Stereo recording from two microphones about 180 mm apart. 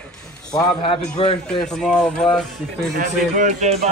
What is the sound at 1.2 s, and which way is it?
Speech, 30° left (ahead or behind).